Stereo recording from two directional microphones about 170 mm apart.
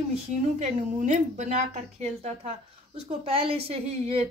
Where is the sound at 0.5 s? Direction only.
45° right (ahead or behind).